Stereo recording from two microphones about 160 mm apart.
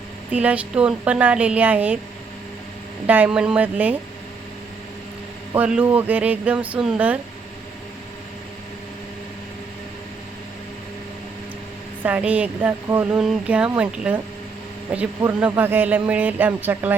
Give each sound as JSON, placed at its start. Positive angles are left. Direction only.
{"t": 0.3, "sound": "speech", "side_deg": -10}
{"t": 3.1, "sound": "speech", "side_deg": -10}
{"t": 5.5, "sound": "speech", "side_deg": -10}
{"t": 12.0, "sound": "speech", "side_deg": -10}